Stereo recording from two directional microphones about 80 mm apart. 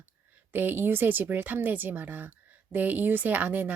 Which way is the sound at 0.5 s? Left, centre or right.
Right.